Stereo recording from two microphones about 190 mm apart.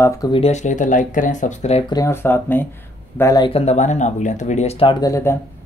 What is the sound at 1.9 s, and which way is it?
Speech, 15° left (ahead or behind).